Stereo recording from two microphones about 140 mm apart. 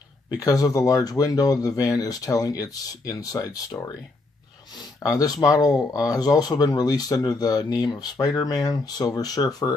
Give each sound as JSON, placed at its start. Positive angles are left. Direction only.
{"t": 0.4, "sound": "speech", "side_deg": 25}
{"t": 5.2, "sound": "speech", "side_deg": 25}